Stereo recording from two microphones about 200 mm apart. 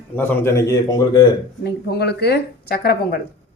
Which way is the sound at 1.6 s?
55° left (ahead or behind).